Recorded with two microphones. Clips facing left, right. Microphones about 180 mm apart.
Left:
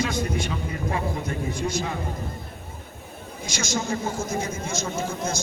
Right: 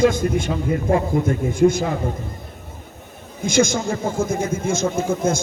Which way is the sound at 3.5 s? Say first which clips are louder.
Right 9 dB; 50° right (ahead or behind).